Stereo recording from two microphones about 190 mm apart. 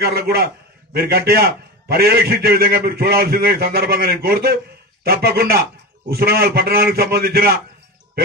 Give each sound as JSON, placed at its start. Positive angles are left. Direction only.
{"t": 0.0, "sound": "a man's voice", "side_deg": -55}